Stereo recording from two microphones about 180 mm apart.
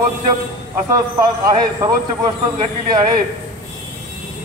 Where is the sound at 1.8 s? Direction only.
20° right (ahead or behind).